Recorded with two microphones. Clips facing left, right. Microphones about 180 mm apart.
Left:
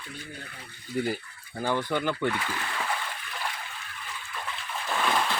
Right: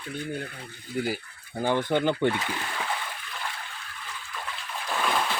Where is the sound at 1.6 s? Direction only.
20° right (ahead or behind).